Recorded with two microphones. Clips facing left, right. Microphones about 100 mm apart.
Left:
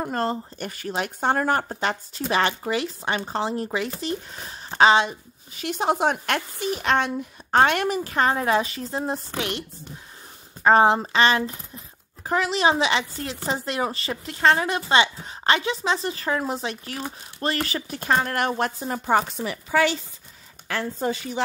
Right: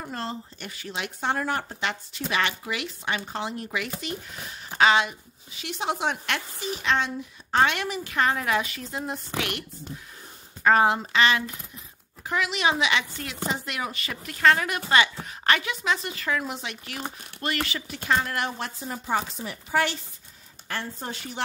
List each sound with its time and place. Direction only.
0.0 s speech: 45° left (ahead or behind); by 5.1 s 30° left (ahead or behind)
5.5 s a woman's voice: 45° left (ahead or behind)